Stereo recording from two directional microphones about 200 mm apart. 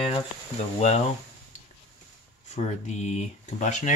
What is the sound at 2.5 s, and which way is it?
Speech, 35° left (ahead or behind).